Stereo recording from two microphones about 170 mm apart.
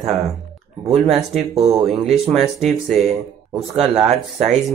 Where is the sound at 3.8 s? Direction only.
40° right (ahead or behind).